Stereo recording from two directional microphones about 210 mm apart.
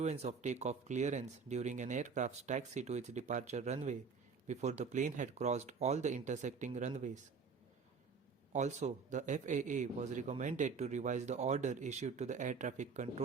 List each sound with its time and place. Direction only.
0.0 s a man's voice: 30° right (ahead or behind)
8.5 s a man's voice: 35° right (ahead or behind)